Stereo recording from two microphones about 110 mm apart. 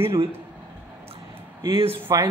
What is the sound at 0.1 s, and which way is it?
Speech, 25° right (ahead or behind).